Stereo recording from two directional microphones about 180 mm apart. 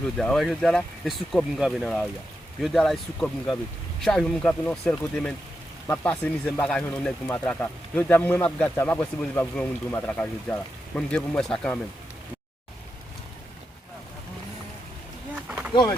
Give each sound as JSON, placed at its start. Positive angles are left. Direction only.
{"t": 0.2, "sound": "speech", "side_deg": 0}
{"t": 15.4, "sound": "a sound", "side_deg": -10}
{"t": 15.7, "sound": "speech", "side_deg": 25}